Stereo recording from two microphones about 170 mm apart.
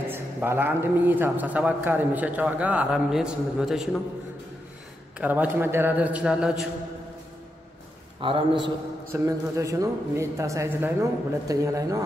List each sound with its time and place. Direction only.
0.1 s a man's voice: 10° right (ahead or behind)
5.2 s a man's voice: 10° right (ahead or behind)
8.2 s speech: 30° right (ahead or behind)
9.1 s speech: 20° right (ahead or behind)